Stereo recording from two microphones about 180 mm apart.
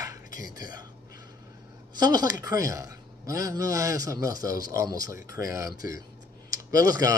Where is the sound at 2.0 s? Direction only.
20° right (ahead or behind).